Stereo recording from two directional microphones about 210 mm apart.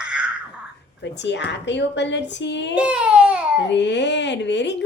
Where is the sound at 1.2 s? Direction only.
55° left (ahead or behind).